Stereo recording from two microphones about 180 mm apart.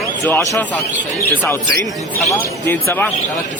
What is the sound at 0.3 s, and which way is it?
Speech, 15° left (ahead or behind).